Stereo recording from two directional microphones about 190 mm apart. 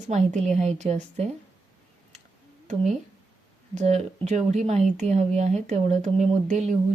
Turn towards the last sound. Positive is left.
turn(degrees=-40)  # may be behind; listen again after turning